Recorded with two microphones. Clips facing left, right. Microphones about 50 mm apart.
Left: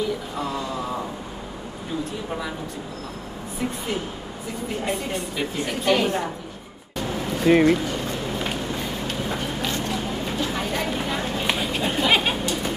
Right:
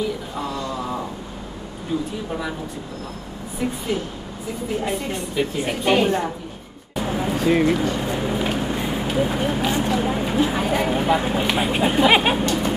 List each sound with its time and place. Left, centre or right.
0.5 s a sound: centre
3.9 s speech: centre
5.7 s a woman's voice: centre
7.0 s a sound: centre
7.4 s speech: centre
7.7 s speech: centre
8.0 s a sound: centre
8.5 s speech: centre
11.5 s chatter: centre